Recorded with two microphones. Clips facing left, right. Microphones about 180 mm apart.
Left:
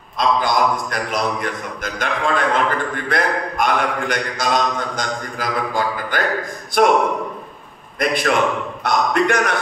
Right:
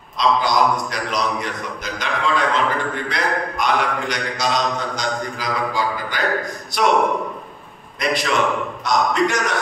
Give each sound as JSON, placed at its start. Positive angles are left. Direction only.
{"t": 0.2, "sound": "speech", "side_deg": 50}
{"t": 8.0, "sound": "a man's voice", "side_deg": 55}